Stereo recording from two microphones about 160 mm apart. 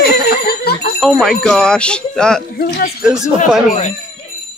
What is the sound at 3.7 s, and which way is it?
Speech, 45° left (ahead or behind).